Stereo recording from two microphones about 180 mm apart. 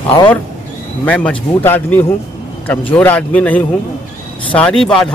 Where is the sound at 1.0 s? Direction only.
5° left (ahead or behind).